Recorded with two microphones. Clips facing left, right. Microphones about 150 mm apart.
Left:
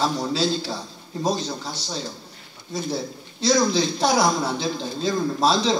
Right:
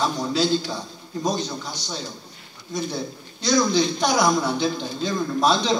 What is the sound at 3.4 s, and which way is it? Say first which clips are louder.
Speech: even; 30° left (ahead or behind).